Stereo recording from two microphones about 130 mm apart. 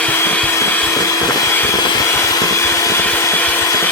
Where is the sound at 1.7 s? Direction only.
25° left (ahead or behind).